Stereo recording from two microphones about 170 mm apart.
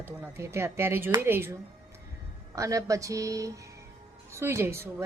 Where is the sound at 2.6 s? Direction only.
20° right (ahead or behind).